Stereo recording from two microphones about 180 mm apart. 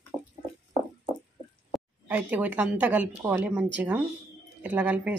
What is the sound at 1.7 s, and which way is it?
A woman's voice, 10° right (ahead or behind).